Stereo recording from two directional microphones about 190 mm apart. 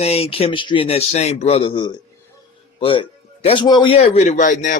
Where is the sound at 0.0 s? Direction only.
30° left (ahead or behind).